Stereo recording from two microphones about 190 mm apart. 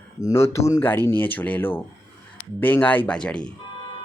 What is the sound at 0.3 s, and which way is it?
Speech, 15° left (ahead or behind).